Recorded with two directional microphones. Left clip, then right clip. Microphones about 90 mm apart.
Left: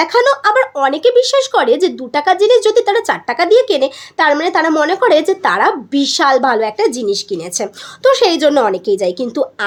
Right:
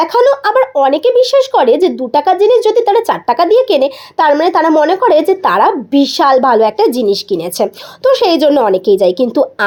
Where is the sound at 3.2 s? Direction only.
25° right (ahead or behind).